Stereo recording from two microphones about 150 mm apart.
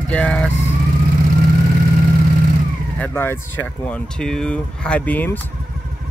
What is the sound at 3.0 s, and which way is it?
Speech, 15° left (ahead or behind).